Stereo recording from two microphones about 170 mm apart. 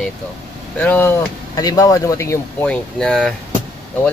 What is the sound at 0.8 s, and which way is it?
Speech, 10° left (ahead or behind).